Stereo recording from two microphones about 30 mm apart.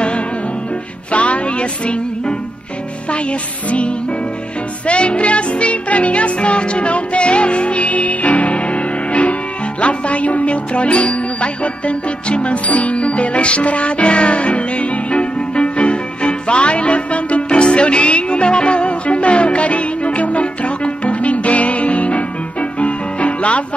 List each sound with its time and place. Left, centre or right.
1.1 s music: left